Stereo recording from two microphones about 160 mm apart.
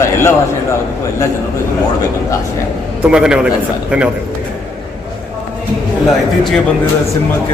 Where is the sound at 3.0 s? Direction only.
5° right (ahead or behind).